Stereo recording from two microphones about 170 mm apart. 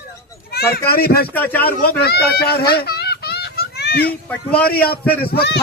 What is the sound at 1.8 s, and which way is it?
Fowl, 70° left (ahead or behind).